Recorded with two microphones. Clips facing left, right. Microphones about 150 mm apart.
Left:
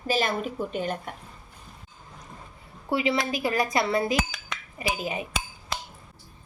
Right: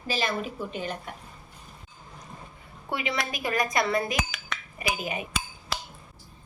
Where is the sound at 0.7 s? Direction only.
50° left (ahead or behind).